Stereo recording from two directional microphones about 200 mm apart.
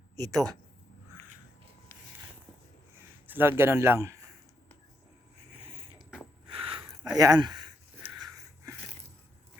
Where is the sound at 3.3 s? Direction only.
10° right (ahead or behind).